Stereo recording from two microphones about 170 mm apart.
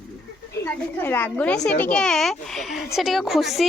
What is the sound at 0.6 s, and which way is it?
A woman's voice, 10° left (ahead or behind).